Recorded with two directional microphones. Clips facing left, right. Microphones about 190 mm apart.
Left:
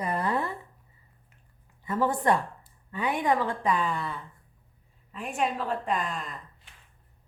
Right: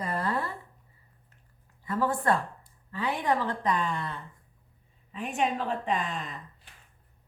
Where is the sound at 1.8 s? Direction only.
20° left (ahead or behind); by 6.3 s centre (ahead or behind).